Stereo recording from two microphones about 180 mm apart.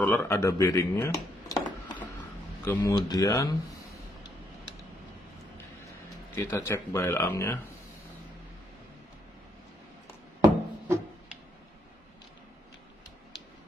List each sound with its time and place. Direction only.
0.0 s speech: 10° left (ahead or behind)
6.3 s speech: 15° left (ahead or behind)